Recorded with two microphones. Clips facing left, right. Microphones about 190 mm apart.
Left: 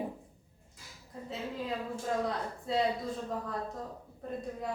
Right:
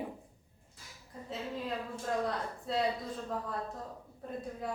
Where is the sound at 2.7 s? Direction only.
Centre (ahead or behind).